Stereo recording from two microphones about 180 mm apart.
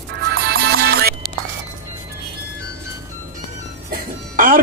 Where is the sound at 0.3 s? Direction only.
60° right (ahead or behind).